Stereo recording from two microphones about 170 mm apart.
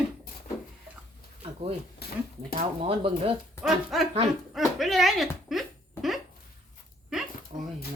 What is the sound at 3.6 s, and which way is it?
A woman's voice, centre (ahead or behind).